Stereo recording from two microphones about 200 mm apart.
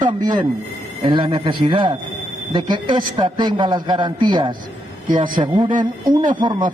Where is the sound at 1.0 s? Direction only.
25° right (ahead or behind).